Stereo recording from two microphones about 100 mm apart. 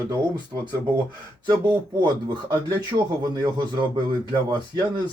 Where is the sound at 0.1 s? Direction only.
50° right (ahead or behind).